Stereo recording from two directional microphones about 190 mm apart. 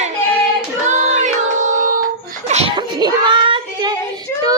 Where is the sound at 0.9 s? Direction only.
40° right (ahead or behind).